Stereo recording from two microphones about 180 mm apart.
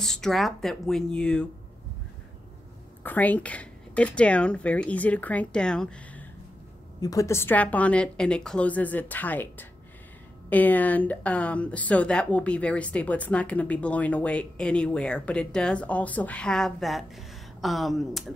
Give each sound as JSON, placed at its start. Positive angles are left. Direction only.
{"t": 0.0, "sound": "speech", "side_deg": 5}
{"t": 3.0, "sound": "speech", "side_deg": 10}
{"t": 7.0, "sound": "speech", "side_deg": 20}